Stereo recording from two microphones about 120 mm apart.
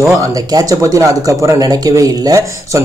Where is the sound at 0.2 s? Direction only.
30° right (ahead or behind).